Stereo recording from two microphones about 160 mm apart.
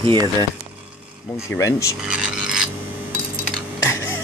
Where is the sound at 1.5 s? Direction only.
20° left (ahead or behind).